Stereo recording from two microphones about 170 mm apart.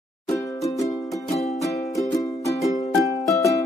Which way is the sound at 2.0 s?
20° left (ahead or behind).